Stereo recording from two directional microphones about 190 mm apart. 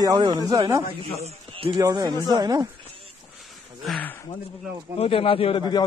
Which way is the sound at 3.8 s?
5° left (ahead or behind).